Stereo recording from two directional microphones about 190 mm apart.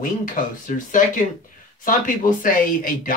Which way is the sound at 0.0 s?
45° left (ahead or behind).